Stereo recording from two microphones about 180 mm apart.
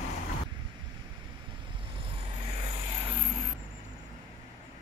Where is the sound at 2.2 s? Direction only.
30° right (ahead or behind).